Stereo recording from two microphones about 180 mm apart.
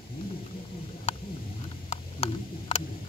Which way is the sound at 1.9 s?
35° left (ahead or behind).